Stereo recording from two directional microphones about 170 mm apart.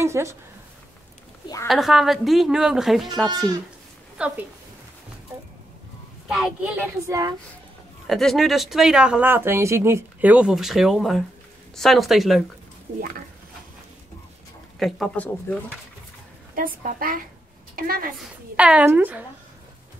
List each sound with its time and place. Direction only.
0.0 s speech: 15° right (ahead or behind)
1.7 s a woman's voice: centre (ahead or behind)
6.2 s speech: 5° right (ahead or behind)
7.1 s speech: 20° right (ahead or behind)
8.1 s speech: centre (ahead or behind)
14.8 s speech: centre (ahead or behind)
16.5 s a woman's voice: 55° right (ahead or behind)
18.1 s a woman's voice: 5° right (ahead or behind)